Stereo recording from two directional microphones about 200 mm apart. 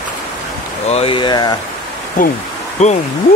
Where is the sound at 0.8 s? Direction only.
30° left (ahead or behind).